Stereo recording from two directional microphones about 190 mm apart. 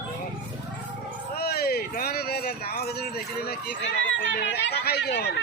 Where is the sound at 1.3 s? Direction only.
55° left (ahead or behind).